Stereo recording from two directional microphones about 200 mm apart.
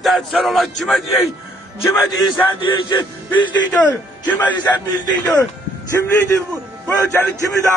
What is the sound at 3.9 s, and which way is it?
Speech, 10° left (ahead or behind).